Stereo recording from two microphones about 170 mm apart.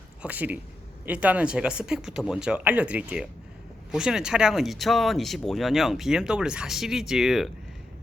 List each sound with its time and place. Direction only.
0.2 s speech: 10° right (ahead or behind)